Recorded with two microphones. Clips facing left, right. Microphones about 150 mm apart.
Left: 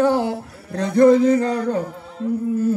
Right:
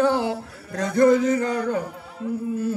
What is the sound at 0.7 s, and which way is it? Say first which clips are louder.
Music: left 4 dB; 30° left (ahead or behind).